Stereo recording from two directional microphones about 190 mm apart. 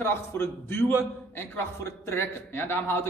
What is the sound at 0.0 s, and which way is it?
A man's voice, 10° left (ahead or behind).